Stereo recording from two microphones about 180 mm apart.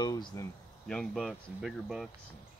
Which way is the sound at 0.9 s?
Centre (ahead or behind).